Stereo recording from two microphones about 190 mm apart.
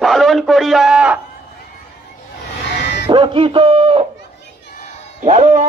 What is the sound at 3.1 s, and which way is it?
A man's voice, 25° right (ahead or behind).